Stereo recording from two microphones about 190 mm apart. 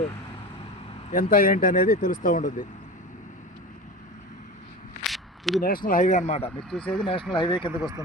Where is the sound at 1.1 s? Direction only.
50° left (ahead or behind).